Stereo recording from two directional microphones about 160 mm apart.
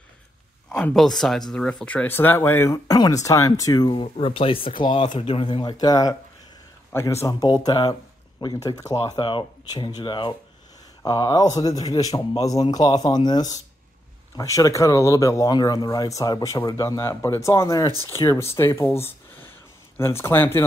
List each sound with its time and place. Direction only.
0.7 s speech: 5° left (ahead or behind); by 3.9 s 20° left (ahead or behind)
3.9 s speech: 35° left (ahead or behind); by 20.6 s 15° left (ahead or behind)